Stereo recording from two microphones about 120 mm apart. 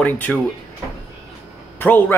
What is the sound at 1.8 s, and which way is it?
Speech, 15° left (ahead or behind).